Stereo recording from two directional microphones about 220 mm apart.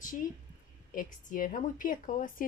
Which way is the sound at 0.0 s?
40° left (ahead or behind).